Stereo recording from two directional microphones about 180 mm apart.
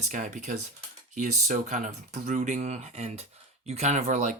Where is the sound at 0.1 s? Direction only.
45° right (ahead or behind).